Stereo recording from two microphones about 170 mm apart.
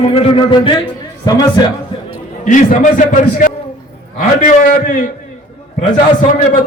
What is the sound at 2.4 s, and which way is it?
A man's voice, 50° left (ahead or behind).